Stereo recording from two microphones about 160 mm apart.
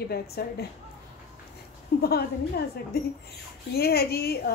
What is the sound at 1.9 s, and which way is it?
Speech, 80° left.